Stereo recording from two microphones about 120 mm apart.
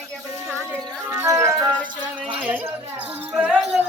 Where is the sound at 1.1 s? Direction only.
25° right (ahead or behind).